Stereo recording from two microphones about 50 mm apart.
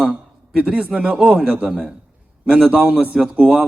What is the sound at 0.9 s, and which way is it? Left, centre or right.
A man's voice, right.